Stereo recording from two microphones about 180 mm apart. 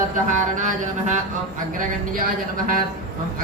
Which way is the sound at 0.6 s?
40° right (ahead or behind).